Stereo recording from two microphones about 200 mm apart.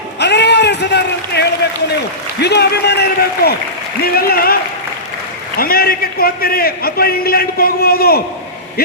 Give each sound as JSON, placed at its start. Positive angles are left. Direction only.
{"t": 0.2, "sound": "a sound", "side_deg": 60}
{"t": 2.4, "sound": "a man's voice", "side_deg": 55}
{"t": 5.5, "sound": "a man's voice", "side_deg": 50}